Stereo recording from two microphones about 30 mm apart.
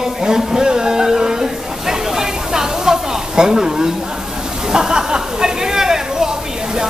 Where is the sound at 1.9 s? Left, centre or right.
Centre.